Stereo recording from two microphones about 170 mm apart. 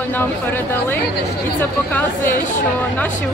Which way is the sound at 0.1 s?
10° left (ahead or behind).